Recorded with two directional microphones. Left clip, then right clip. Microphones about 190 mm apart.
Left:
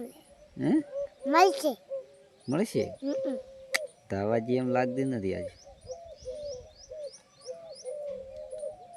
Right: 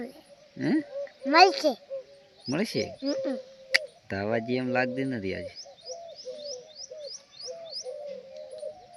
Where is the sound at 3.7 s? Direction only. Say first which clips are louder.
Right 5 dB; 20° left (ahead or behind).